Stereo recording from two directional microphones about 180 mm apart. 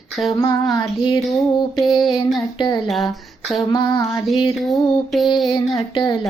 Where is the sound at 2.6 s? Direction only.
25° left (ahead or behind).